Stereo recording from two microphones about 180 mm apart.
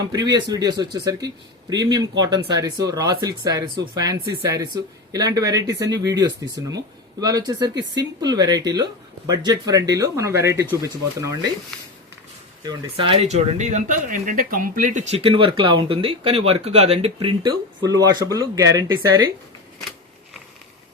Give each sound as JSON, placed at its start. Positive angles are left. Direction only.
{"t": 0.1, "sound": "speech", "side_deg": -25}
{"t": 12.6, "sound": "speech", "side_deg": -30}
{"t": 15.2, "sound": "speech", "side_deg": -30}